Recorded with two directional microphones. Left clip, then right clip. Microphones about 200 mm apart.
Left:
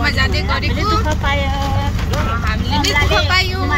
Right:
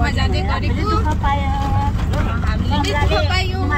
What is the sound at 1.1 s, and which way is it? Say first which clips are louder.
Speech: left 2 dB; 10° right (ahead or behind).